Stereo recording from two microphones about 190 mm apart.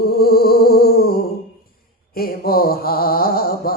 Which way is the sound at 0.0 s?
55° left (ahead or behind).